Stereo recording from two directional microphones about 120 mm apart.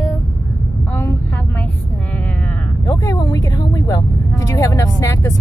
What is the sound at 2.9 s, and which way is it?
Vehicle, 25° left (ahead or behind).